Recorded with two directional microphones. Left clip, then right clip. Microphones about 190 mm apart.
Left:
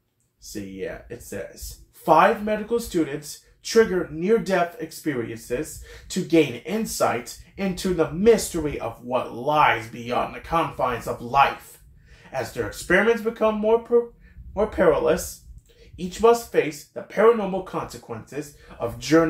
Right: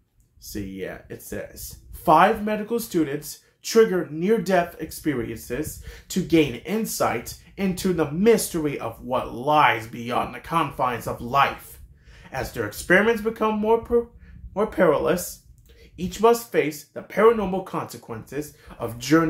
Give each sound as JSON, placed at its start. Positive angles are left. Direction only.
{"t": 0.4, "sound": "speech", "side_deg": -30}